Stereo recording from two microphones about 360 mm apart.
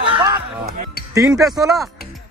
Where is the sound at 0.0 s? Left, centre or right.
Centre.